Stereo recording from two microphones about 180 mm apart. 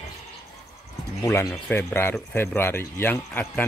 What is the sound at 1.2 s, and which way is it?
Speech, 15° left (ahead or behind).